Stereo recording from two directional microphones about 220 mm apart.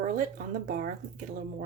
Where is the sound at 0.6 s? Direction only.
40° right (ahead or behind).